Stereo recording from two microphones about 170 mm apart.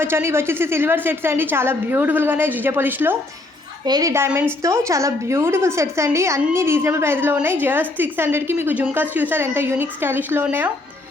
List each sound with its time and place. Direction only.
0.0 s a woman's voice: 15° right (ahead or behind)